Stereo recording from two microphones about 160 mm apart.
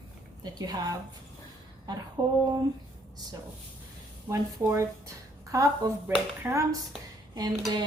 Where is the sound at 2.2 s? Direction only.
20° right (ahead or behind).